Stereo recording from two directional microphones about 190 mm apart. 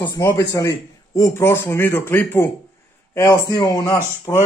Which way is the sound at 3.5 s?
20° left (ahead or behind).